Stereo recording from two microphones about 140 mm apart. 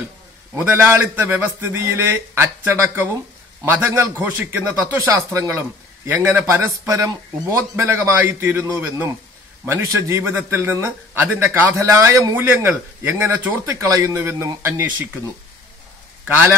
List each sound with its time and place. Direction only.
0.6 s a man's voice: 15° right (ahead or behind)
16.3 s a man's voice: 15° right (ahead or behind)